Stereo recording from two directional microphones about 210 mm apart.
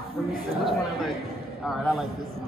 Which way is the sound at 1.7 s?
Centre (ahead or behind).